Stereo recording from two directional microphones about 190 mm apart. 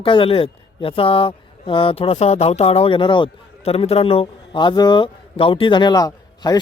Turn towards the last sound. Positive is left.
turn(degrees=20)  # may be behind; listen again after turning